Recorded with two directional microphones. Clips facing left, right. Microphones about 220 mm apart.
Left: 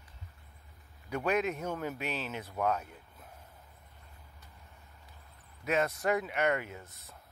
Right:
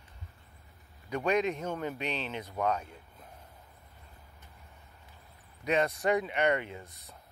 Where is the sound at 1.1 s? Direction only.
5° left (ahead or behind).